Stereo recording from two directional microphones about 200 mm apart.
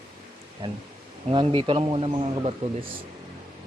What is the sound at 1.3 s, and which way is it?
A man's voice, 25° right (ahead or behind).